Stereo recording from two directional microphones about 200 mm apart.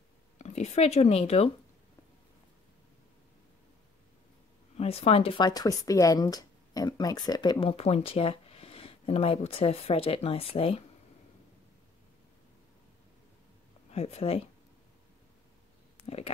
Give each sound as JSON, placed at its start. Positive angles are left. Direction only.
{"t": 0.4, "sound": "speech", "side_deg": 35}
{"t": 4.7, "sound": "speech", "side_deg": 30}
{"t": 13.9, "sound": "speech", "side_deg": 30}